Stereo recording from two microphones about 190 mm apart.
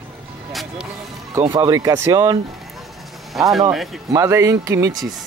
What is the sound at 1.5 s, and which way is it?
Speech, 20° right (ahead or behind).